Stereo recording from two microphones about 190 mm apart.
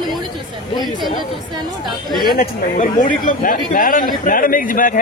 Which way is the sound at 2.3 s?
45° left (ahead or behind).